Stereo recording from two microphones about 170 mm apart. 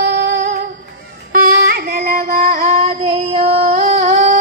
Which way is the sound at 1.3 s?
65° right (ahead or behind).